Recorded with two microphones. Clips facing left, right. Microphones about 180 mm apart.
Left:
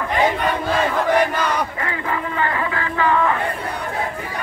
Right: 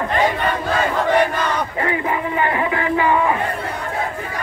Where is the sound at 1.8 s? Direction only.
20° right (ahead or behind).